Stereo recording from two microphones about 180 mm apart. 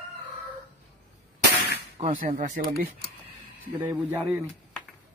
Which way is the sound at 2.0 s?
45° right (ahead or behind).